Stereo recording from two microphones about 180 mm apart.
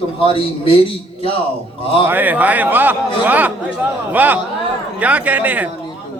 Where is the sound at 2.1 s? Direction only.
10° right (ahead or behind).